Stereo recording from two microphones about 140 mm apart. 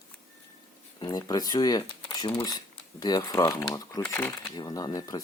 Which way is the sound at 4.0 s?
15° left (ahead or behind).